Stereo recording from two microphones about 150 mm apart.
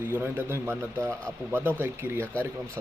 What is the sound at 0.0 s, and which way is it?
A man's voice, 15° right (ahead or behind).